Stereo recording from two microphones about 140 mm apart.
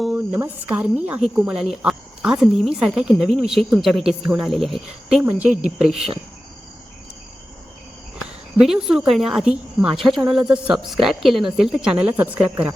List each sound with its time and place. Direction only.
0.0 s a woman's voice: 10° right (ahead or behind)
8.5 s a woman's voice: 5° right (ahead or behind)